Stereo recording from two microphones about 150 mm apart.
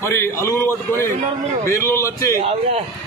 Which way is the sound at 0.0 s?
20° left (ahead or behind).